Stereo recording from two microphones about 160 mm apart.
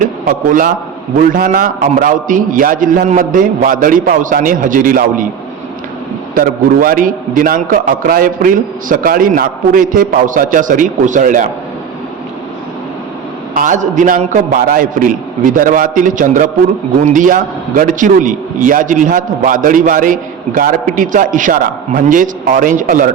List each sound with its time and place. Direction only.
0.0 s a man's voice: 60° right (ahead or behind)
6.3 s a man's voice: 60° right (ahead or behind)
13.5 s a man's voice: 55° right (ahead or behind)